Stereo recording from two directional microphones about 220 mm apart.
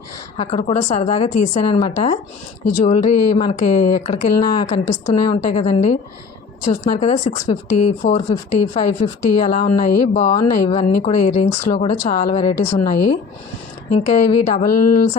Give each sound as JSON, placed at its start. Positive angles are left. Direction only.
{"t": 0.3, "sound": "a woman's voice", "side_deg": 30}
{"t": 14.6, "sound": "a woman's voice", "side_deg": 40}